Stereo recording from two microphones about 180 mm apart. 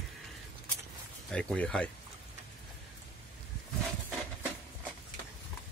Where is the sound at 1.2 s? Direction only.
5° left (ahead or behind).